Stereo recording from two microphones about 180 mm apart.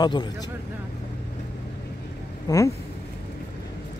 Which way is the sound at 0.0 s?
25° left (ahead or behind).